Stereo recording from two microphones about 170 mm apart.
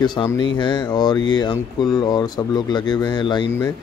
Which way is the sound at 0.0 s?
25° left (ahead or behind).